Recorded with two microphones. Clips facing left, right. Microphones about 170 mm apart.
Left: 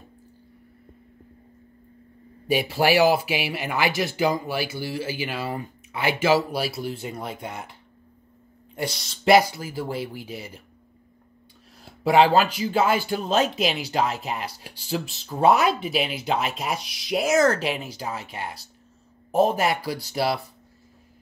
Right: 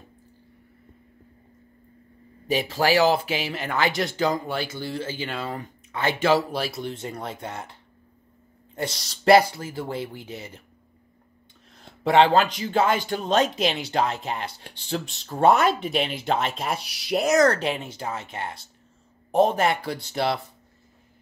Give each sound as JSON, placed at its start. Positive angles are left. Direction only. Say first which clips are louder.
{"t": 2.5, "sound": "speech", "louder": "left 1 dB", "side_deg": 10}
{"t": 7.4, "sound": "speech", "louder": "even", "side_deg": -25}
{"t": 8.9, "sound": "speech", "louder": "even", "side_deg": 0}
{"t": 9.3, "sound": "speech", "louder": "right 1 dB", "side_deg": -30}
{"t": 11.8, "sound": "speech", "louder": "even", "side_deg": 10}
{"t": 14.2, "sound": "speech", "louder": "even", "side_deg": -30}
{"t": 14.6, "sound": "speech", "louder": "left 1 dB", "side_deg": 5}
{"t": 17.6, "sound": "speech", "louder": "even", "side_deg": -30}
{"t": 19.3, "sound": "speech", "louder": "right 1 dB", "side_deg": 5}